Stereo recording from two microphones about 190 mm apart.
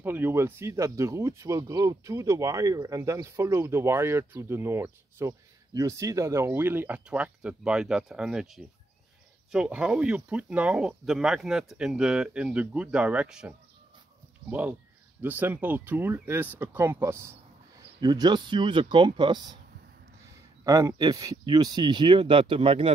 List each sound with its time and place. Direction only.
0.0 s speech: 10° right (ahead or behind)
20.6 s speech: 20° right (ahead or behind)